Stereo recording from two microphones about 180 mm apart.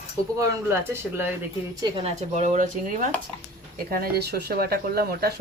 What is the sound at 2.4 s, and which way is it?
Speech, 45° right (ahead or behind).